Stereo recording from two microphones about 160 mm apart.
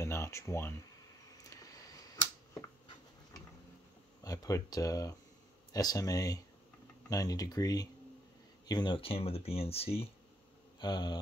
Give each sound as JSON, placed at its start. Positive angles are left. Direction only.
{"t": 0.0, "sound": "a sound", "side_deg": 15}
{"t": 4.2, "sound": "speech", "side_deg": 25}
{"t": 10.8, "sound": "speech", "side_deg": 25}